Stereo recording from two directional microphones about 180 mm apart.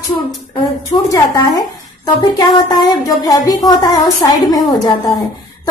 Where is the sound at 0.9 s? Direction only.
20° left (ahead or behind).